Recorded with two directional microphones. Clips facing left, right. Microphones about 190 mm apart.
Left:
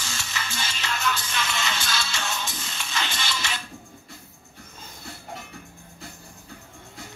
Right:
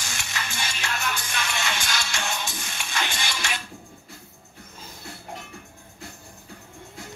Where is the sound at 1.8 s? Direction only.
15° right (ahead or behind).